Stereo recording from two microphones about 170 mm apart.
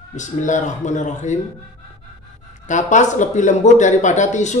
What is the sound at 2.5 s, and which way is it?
Speech, 45° left (ahead or behind).